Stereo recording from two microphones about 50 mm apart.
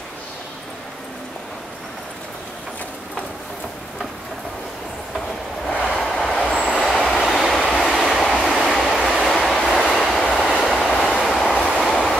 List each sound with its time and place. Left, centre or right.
5.7 s train: centre
6.1 s vehicle: centre
6.8 s train: centre